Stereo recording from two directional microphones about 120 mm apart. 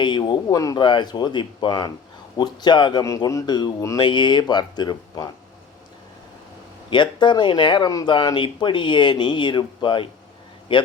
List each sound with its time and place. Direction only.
0.0 s speech: 40° left (ahead or behind)
6.9 s a man's voice: 40° left (ahead or behind)